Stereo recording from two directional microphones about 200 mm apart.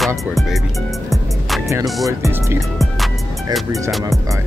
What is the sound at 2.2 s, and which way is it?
Music, 10° right (ahead or behind).